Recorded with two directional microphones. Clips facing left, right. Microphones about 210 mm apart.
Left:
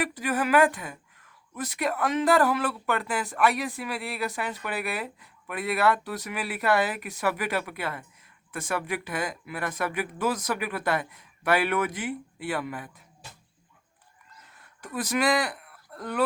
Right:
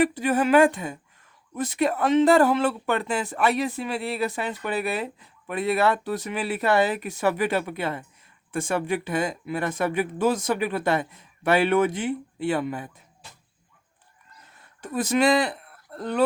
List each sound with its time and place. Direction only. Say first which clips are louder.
0.0 s speech: right 6 dB; 25° right (ahead or behind)
14.8 s speech: right 5 dB; 25° right (ahead or behind)